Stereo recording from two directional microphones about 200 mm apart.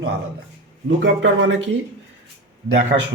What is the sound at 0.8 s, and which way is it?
Speech, 65° right (ahead or behind).